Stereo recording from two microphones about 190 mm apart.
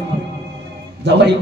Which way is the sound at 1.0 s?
65° right (ahead or behind).